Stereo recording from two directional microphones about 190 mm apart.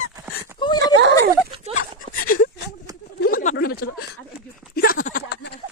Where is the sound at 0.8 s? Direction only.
70° right (ahead or behind).